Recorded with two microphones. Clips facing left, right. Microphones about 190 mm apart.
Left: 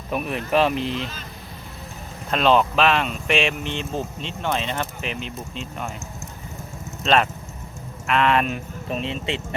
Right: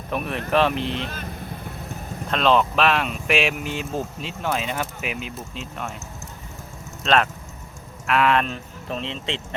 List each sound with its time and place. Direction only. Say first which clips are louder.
0.1 s speech: left 1 dB; centre (ahead or behind)
2.3 s speech: left 1 dB; centre (ahead or behind)
7.0 s speech: left 1 dB; centre (ahead or behind)